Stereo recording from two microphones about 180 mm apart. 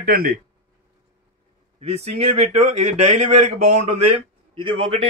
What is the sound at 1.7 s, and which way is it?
Speech, 35° right (ahead or behind).